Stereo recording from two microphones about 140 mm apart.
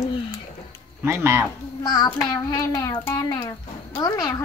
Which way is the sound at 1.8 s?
25° left (ahead or behind).